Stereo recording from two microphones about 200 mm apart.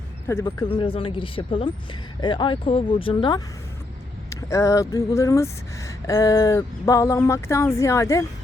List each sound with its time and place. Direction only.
0.3 s speech: 15° left (ahead or behind)